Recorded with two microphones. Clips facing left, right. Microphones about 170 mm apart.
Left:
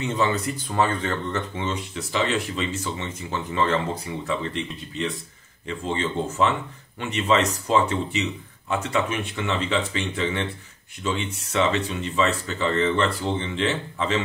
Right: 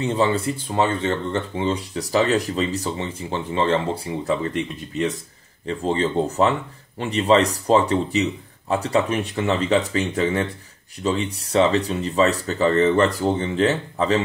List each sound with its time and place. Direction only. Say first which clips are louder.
0.0 s speech: right 4 dB; 30° right (ahead or behind)
5.7 s speech: right 5 dB; 40° right (ahead or behind)